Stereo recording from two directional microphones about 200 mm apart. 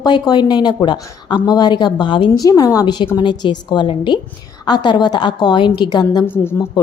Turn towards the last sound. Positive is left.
turn(degrees=10)  # may be behind; listen again after turning